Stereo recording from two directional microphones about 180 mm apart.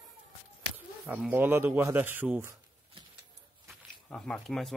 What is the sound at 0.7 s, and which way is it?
Speech, 10° right (ahead or behind).